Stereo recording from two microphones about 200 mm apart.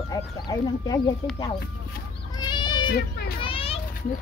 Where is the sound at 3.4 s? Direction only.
25° left (ahead or behind).